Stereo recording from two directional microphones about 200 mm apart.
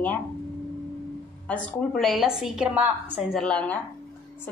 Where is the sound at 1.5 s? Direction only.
5° left (ahead or behind).